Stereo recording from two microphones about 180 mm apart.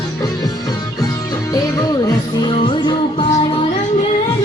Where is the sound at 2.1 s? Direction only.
25° left (ahead or behind).